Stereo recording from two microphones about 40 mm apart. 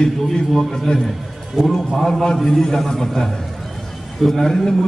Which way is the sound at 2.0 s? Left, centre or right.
Centre.